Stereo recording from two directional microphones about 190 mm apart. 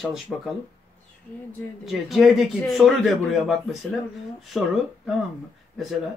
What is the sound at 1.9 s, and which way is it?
Speech, centre (ahead or behind).